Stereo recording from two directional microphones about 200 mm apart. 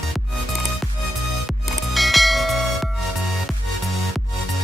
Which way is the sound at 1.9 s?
Centre (ahead or behind).